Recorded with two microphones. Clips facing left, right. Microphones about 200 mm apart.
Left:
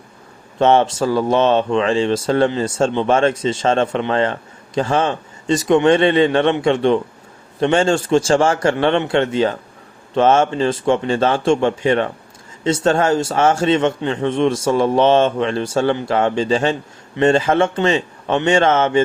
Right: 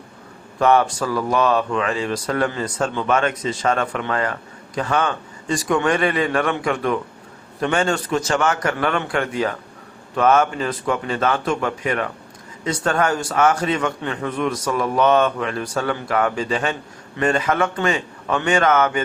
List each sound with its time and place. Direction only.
0.6 s speech: 25° left (ahead or behind)